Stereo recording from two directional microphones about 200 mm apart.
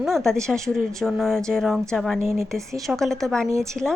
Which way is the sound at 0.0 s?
Centre (ahead or behind).